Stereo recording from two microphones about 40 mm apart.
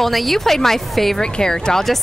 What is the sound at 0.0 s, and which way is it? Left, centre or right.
A woman's voice, centre.